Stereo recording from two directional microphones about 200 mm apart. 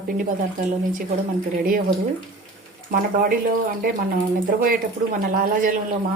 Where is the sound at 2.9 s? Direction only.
45° right (ahead or behind).